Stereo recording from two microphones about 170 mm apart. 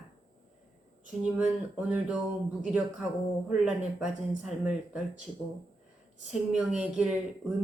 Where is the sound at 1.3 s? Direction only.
10° right (ahead or behind).